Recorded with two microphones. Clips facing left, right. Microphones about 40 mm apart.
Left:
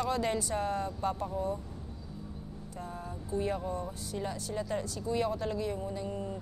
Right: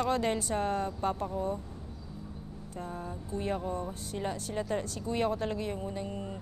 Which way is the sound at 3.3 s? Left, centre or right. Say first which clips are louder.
Left 1 dB; right.